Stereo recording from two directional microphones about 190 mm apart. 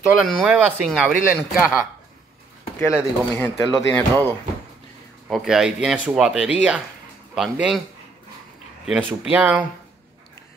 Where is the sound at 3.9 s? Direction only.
10° left (ahead or behind).